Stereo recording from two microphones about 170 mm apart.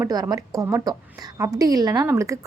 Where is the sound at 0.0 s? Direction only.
20° right (ahead or behind).